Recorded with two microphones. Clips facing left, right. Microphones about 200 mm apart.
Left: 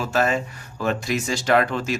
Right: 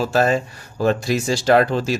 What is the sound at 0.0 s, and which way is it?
Speech, 35° right (ahead or behind).